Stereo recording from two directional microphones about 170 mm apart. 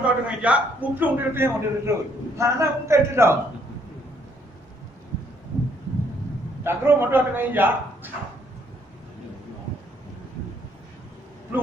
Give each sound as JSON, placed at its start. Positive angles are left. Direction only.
{"t": 0.0, "sound": "a man's voice", "side_deg": -5}
{"t": 6.7, "sound": "a man's voice", "side_deg": -15}